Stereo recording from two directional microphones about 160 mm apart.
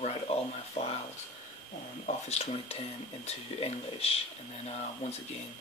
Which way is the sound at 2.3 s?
40° left (ahead or behind).